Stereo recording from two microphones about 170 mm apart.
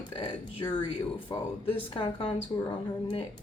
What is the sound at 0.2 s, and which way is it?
Speech, 30° left (ahead or behind).